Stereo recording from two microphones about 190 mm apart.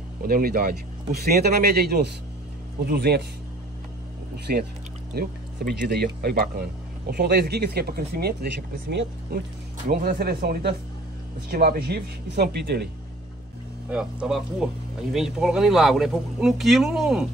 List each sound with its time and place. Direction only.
0.2 s speech: 50° right (ahead or behind)
4.5 s speech: 50° right (ahead or behind)
9.8 s speech: 50° right (ahead or behind)
13.8 s speech: 5° right (ahead or behind)